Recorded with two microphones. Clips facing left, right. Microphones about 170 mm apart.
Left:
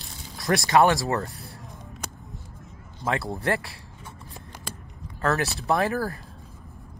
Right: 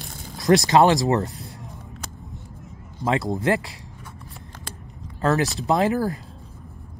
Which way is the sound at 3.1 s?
20° right (ahead or behind).